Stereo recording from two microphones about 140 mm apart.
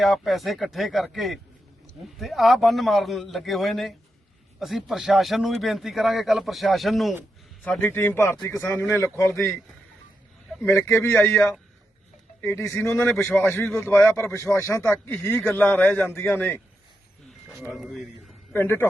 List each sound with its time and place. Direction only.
0.0 s a man's voice: centre (ahead or behind)
7.6 s speech: 10° left (ahead or behind)
10.6 s speech: 15° left (ahead or behind)
17.5 s a man's voice: centre (ahead or behind)
18.5 s speech: 15° left (ahead or behind)